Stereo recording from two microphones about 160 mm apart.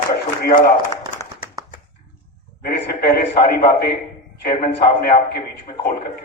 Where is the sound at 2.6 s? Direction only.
85° left.